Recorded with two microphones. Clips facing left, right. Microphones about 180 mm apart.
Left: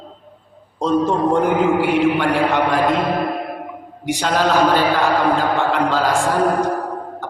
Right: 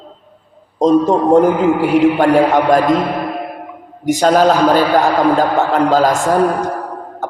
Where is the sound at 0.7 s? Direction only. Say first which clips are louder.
Right 6 dB; 40° right (ahead or behind).